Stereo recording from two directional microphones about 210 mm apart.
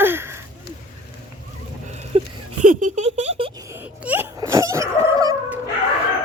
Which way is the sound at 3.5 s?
10° right (ahead or behind).